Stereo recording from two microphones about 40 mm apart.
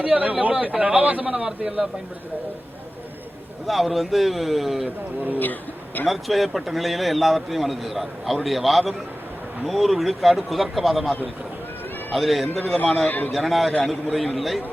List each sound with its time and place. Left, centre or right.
0.0 s a man's voice: right
1.3 s a man's voice: centre
3.7 s a man's voice: centre
5.4 s a man's voice: left
6.1 s a man's voice: centre
13.1 s a man's voice: left
13.3 s a man's voice: centre